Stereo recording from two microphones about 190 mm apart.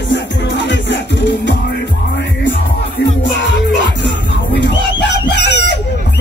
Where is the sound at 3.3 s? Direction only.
70° left (ahead or behind).